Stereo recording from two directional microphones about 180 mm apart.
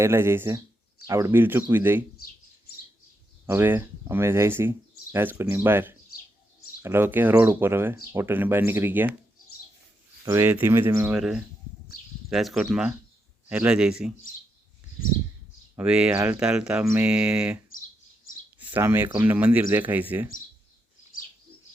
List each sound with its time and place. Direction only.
0.0 s speech: 15° right (ahead or behind)
3.4 s speech: 10° right (ahead or behind)
10.2 s speech: 15° right (ahead or behind)
12.3 s speech: centre (ahead or behind)
15.7 s speech: 5° right (ahead or behind)
18.6 s speech: 10° right (ahead or behind)